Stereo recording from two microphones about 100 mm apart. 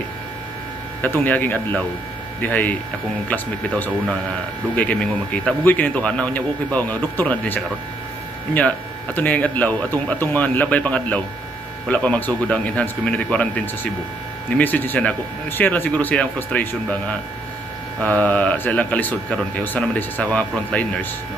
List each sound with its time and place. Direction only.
1.0 s speech: 15° left (ahead or behind)
18.0 s speech: 15° left (ahead or behind)